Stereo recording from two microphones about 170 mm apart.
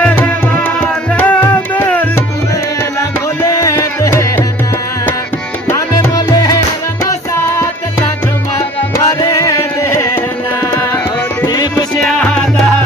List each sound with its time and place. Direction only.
0.0 s music: 10° left (ahead or behind)
3.4 s music: 15° left (ahead or behind)
5.7 s music: 20° left (ahead or behind)
8.9 s music: 20° left (ahead or behind)
12.0 s music: 5° left (ahead or behind)